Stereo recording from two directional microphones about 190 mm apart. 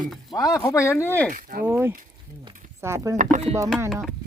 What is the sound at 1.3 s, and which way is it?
Speech, 45° right (ahead or behind).